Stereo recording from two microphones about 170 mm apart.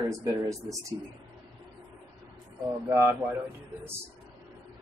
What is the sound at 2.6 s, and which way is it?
Speech, 10° right (ahead or behind).